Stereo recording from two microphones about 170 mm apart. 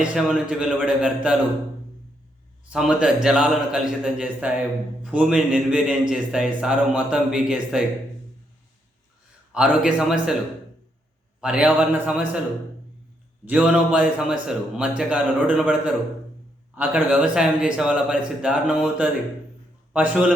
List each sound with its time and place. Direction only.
0.0 s a man's voice: 5° right (ahead or behind)
2.7 s a man's voice: 5° right (ahead or behind)
9.5 s a man's voice: 5° right (ahead or behind)
11.3 s a man's voice: 5° right (ahead or behind)
13.4 s a man's voice: 5° right (ahead or behind)